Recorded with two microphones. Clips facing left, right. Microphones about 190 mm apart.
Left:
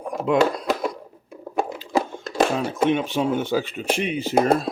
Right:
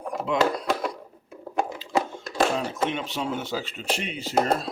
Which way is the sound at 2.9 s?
55° left (ahead or behind).